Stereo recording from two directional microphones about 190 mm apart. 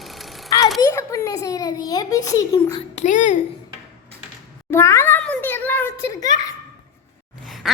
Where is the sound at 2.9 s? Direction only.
40° left (ahead or behind).